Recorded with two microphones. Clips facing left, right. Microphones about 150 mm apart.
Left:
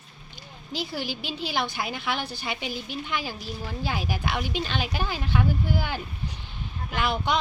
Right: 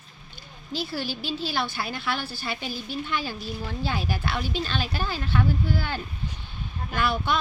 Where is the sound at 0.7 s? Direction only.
20° left (ahead or behind).